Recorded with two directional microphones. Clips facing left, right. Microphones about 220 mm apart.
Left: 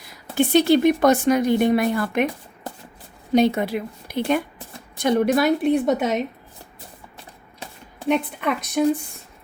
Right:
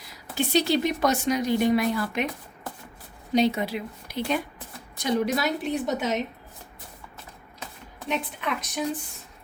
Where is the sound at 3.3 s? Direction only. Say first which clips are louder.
Left 5 dB; 55° left (ahead or behind).